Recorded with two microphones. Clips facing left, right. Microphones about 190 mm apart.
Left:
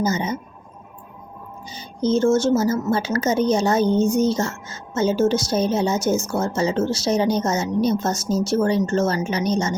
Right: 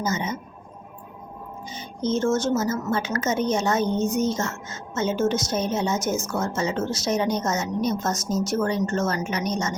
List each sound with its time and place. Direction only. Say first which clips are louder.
0.0 s speech: left 4 dB; 35° left (ahead or behind)
1.7 s speech: left 5 dB; 35° left (ahead or behind)